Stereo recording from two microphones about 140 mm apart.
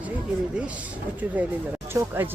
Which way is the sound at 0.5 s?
10° right (ahead or behind).